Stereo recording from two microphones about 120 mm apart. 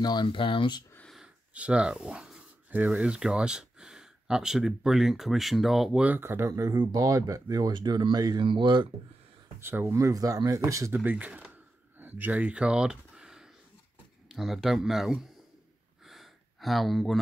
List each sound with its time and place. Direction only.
0.0 s speech: 40° left (ahead or behind)
1.1 s a sound: 10° right (ahead or behind)
2.7 s speech: 15° right (ahead or behind)
6.0 s speech: 20° right (ahead or behind); by 8.8 s 40° right (ahead or behind)
9.6 s speech: 20° right (ahead or behind)
12.0 s a sound: 15° right (ahead or behind)
14.3 s speech: centre (ahead or behind)
16.1 s gasp: centre (ahead or behind)